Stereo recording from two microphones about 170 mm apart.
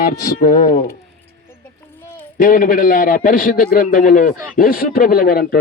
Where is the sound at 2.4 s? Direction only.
55° left (ahead or behind).